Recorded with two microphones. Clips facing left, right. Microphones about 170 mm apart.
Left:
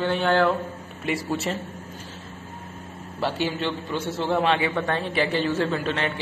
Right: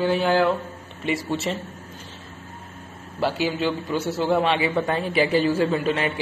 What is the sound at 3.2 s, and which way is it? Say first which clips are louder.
A man's voice: right 3 dB; 5° right (ahead or behind).